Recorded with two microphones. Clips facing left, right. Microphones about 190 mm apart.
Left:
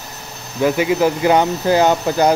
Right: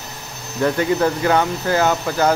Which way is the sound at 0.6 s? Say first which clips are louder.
Left 2 dB; 10° left (ahead or behind).